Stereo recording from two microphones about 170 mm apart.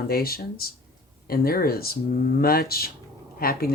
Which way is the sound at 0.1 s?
60° left (ahead or behind).